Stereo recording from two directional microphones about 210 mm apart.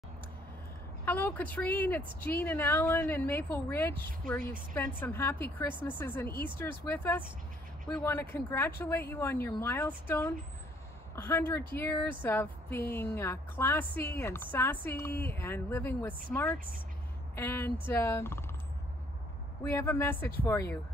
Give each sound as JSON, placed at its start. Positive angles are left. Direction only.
{"t": 1.0, "sound": "speech", "side_deg": 10}
{"t": 16.5, "sound": "speech", "side_deg": -40}
{"t": 17.4, "sound": "speech", "side_deg": 10}
{"t": 19.6, "sound": "speech", "side_deg": 15}